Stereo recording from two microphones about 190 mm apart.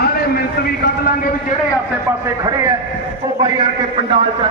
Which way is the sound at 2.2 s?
20° right (ahead or behind).